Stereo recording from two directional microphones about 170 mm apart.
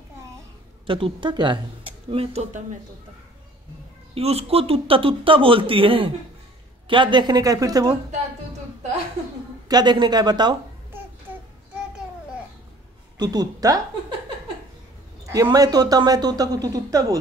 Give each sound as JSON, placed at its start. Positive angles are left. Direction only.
{"t": 0.8, "sound": "speech", "side_deg": -30}
{"t": 4.1, "sound": "speech", "side_deg": -35}
{"t": 9.7, "sound": "speech", "side_deg": -25}
{"t": 10.9, "sound": "child singing", "side_deg": -10}
{"t": 13.2, "sound": "speech", "side_deg": -25}
{"t": 15.2, "sound": "speech", "side_deg": -20}